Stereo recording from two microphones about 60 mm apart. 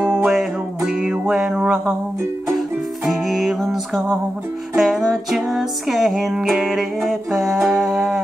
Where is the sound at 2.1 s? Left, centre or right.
Right.